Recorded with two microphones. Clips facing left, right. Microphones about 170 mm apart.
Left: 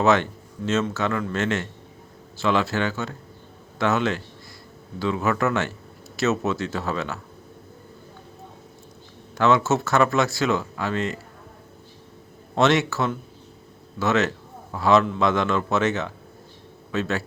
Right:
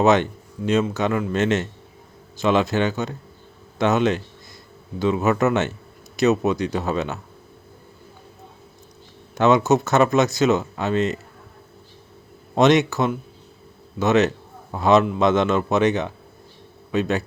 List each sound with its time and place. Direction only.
0.0 s a man's voice: 20° right (ahead or behind)
9.3 s a man's voice: 20° right (ahead or behind)
12.5 s a man's voice: 20° right (ahead or behind)